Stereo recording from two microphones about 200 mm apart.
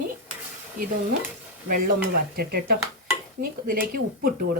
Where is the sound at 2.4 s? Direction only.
50° right (ahead or behind).